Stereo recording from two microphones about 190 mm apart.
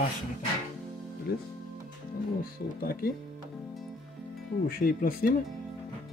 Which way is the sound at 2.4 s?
50° left (ahead or behind).